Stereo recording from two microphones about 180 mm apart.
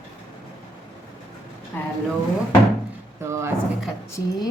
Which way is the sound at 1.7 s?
10° left (ahead or behind).